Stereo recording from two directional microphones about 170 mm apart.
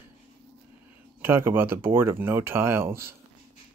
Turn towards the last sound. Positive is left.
turn(degrees=-15)  # may be behind; listen again after turning